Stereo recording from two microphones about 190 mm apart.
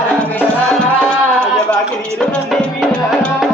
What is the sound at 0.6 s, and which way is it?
Music, 5° left (ahead or behind).